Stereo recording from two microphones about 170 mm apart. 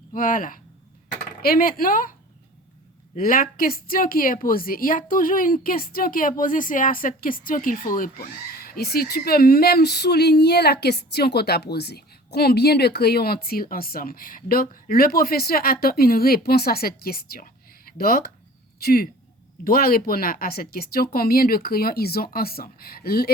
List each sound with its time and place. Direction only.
0.1 s speech: 55° left (ahead or behind)
3.2 s speech: 55° left (ahead or behind)